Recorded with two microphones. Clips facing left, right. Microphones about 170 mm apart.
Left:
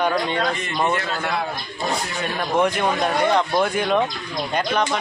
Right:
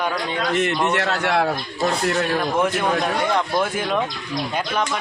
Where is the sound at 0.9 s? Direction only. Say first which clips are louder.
Right 3 dB; 75° right (ahead or behind).